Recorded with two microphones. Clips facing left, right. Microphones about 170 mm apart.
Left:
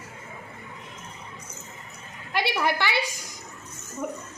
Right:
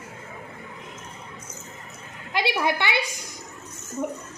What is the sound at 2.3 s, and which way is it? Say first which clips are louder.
Speech: right 1 dB; 15° right (ahead or behind).